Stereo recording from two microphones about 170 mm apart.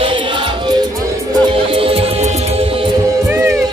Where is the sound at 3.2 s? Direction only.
15° right (ahead or behind).